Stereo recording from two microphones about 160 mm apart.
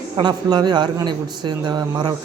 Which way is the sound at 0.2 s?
25° right (ahead or behind).